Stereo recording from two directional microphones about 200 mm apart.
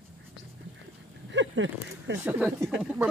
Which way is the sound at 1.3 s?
70° right (ahead or behind).